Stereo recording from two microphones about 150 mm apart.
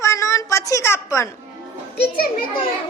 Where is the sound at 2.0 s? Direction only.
90° left.